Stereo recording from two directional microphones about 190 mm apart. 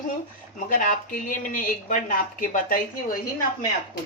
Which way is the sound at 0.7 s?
45° left (ahead or behind).